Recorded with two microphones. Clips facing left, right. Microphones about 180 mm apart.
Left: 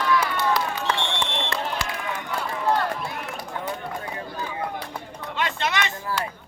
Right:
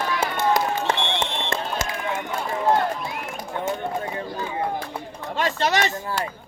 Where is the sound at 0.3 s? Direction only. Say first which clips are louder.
Right 3 dB; 45° right (ahead or behind).